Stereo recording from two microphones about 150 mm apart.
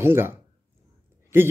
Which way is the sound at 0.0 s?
15° right (ahead or behind).